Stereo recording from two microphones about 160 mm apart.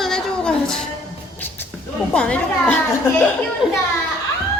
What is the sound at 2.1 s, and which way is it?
Speech, 5° left (ahead or behind).